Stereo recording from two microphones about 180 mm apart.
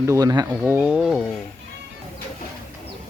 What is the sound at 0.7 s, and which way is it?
Speech, 10° right (ahead or behind).